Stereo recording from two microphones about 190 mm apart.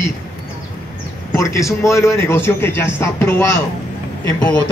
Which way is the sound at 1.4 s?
15° left (ahead or behind).